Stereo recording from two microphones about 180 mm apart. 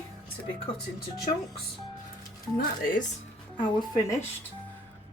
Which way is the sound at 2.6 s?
50° left (ahead or behind).